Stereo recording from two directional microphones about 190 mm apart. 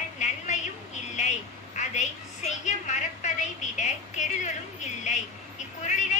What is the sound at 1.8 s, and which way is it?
A woman's voice, 40° left (ahead or behind).